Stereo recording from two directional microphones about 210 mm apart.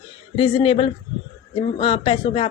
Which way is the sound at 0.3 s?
25° left (ahead or behind).